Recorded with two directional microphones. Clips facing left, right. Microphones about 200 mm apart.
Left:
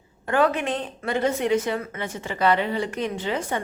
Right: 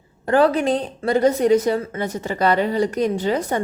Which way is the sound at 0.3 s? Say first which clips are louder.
Right 5 dB; 35° right (ahead or behind).